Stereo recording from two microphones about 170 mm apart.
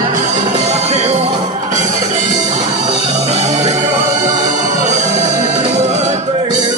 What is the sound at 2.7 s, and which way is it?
Music, 35° right (ahead or behind).